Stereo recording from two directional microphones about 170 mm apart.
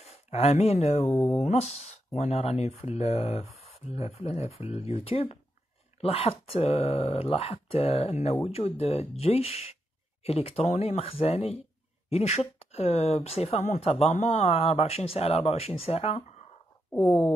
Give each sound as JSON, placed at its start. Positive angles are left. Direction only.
{"t": 0.0, "sound": "speech", "side_deg": 40}
{"t": 1.0, "sound": "speech", "side_deg": 0}
{"t": 1.4, "sound": "speech", "side_deg": 40}